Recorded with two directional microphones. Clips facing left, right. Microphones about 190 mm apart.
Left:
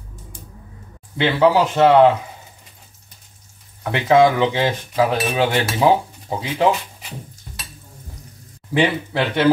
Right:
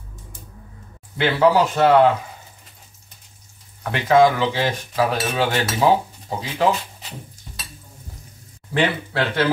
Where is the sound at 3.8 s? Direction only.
20° left (ahead or behind).